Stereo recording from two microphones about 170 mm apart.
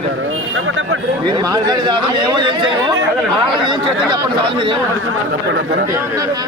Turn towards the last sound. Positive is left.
turn(degrees=-20)  # may be behind; listen again after turning